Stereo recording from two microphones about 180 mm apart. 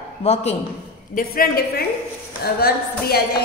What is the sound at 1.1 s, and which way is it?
A woman's voice, 55° left (ahead or behind).